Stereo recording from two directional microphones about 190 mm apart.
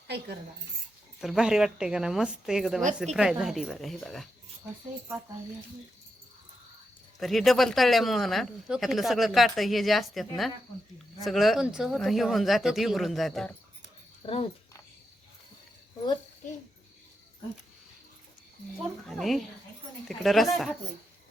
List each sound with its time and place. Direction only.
1.2 s speech: 5° right (ahead or behind)
7.2 s speech: centre (ahead or behind)
14.3 s speech: 30° left (ahead or behind)
19.0 s speech: centre (ahead or behind)